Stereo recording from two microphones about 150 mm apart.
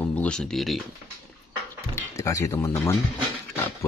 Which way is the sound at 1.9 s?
20° left (ahead or behind).